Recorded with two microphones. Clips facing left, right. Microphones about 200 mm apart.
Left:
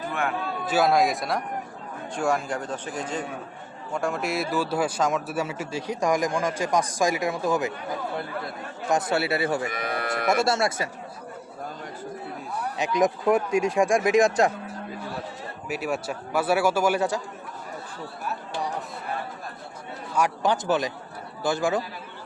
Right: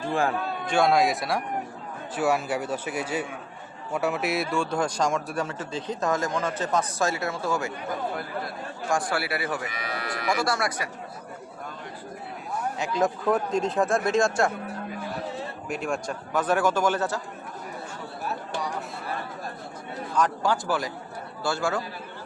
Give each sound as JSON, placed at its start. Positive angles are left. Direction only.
{"t": 0.1, "sound": "a man's voice", "side_deg": -30}
{"t": 0.7, "sound": "a man's voice", "side_deg": 0}
{"t": 9.6, "sound": "livestock", "side_deg": 50}
{"t": 10.2, "sound": "speech", "side_deg": 25}
{"t": 12.8, "sound": "a man's voice", "side_deg": 15}
{"t": 15.7, "sound": "a man's voice", "side_deg": 5}
{"t": 20.1, "sound": "a man's voice", "side_deg": 15}